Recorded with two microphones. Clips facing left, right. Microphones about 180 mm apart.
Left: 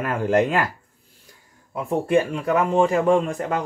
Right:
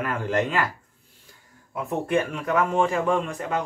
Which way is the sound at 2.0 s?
30° left (ahead or behind).